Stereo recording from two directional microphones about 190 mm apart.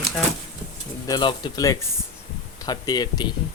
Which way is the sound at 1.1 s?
25° left (ahead or behind).